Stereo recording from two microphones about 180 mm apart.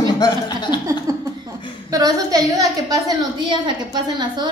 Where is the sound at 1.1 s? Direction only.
20° right (ahead or behind).